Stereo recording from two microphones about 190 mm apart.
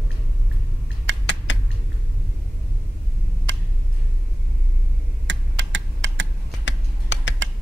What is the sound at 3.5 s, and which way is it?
Tick, 70° right (ahead or behind).